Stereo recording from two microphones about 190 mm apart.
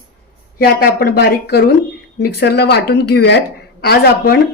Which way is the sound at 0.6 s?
50° left (ahead or behind).